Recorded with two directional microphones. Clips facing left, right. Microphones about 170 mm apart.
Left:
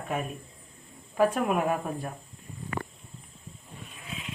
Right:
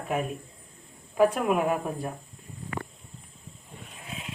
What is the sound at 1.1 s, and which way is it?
Speech, 15° right (ahead or behind).